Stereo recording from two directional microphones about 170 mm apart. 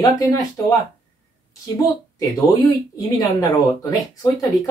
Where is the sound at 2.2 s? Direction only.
20° left (ahead or behind).